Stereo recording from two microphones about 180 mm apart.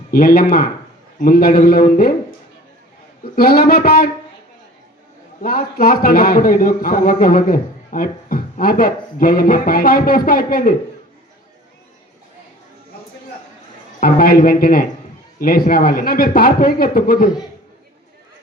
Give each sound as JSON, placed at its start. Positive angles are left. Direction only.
{"t": 0.1, "sound": "a man's voice", "side_deg": 55}
{"t": 3.3, "sound": "a man's voice", "side_deg": 55}
{"t": 5.4, "sound": "a man's voice", "side_deg": 55}
{"t": 14.0, "sound": "a man's voice", "side_deg": 55}